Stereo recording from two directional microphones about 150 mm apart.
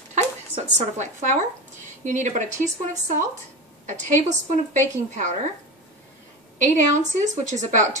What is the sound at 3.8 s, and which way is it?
A woman's voice, 55° right (ahead or behind).